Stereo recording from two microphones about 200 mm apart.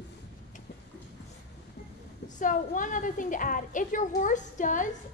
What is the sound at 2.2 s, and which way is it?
A woman's voice, 40° left (ahead or behind).